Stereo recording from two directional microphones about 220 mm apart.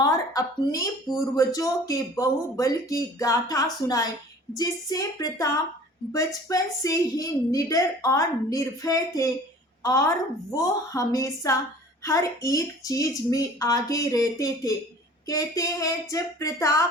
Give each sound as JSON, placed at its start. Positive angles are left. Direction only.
{"t": 0.0, "sound": "a woman's voice", "side_deg": 15}